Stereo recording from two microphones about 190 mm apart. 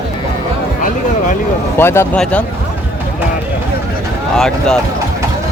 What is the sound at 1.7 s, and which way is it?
Speech, 10° left (ahead or behind).